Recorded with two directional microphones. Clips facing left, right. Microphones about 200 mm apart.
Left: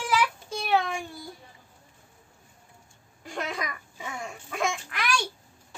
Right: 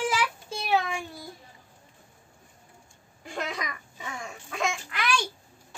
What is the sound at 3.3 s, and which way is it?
A woman's voice, centre (ahead or behind).